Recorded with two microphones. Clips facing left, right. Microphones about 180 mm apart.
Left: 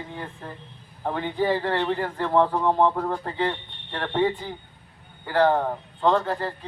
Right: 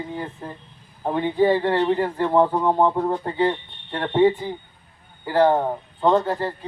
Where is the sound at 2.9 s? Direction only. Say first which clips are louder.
Right 5 dB; 20° right (ahead or behind).